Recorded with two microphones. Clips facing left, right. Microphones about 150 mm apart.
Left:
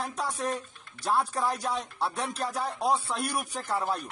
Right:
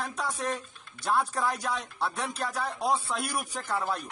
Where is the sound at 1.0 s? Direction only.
Centre (ahead or behind).